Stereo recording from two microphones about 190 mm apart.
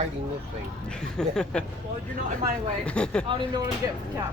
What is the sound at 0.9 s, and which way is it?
Speech, 5° left (ahead or behind).